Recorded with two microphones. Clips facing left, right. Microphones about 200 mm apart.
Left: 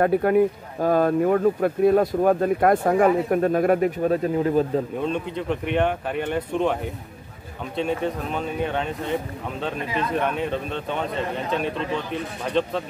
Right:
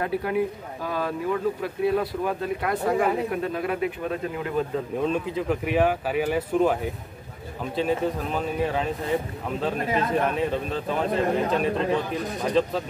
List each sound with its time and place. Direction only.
0.0 s speech: 50° left (ahead or behind)
4.9 s speech: centre (ahead or behind)
11.7 s speech: 35° right (ahead or behind)
12.4 s speech: centre (ahead or behind)